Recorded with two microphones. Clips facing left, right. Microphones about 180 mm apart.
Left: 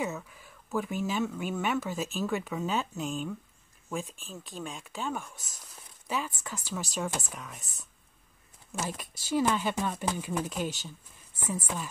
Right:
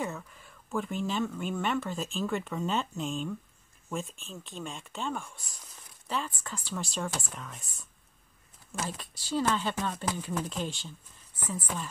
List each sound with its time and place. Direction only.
0.0 s speech: 5° left (ahead or behind)
9.3 s speech: 10° left (ahead or behind)